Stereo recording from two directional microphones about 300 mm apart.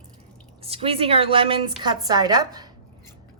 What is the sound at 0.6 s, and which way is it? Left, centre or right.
A woman's voice, centre.